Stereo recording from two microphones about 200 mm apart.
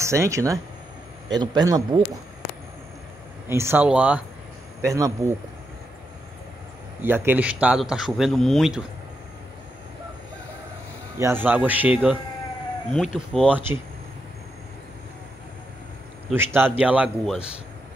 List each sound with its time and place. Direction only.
0.0 s a man's voice: 15° right (ahead or behind)
3.4 s a man's voice: 10° right (ahead or behind)
7.0 s a man's voice: 10° right (ahead or behind)
11.1 s a man's voice: 10° right (ahead or behind)
16.3 s a man's voice: 10° right (ahead or behind)